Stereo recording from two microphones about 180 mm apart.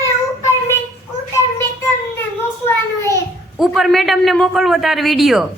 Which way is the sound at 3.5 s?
Centre (ahead or behind).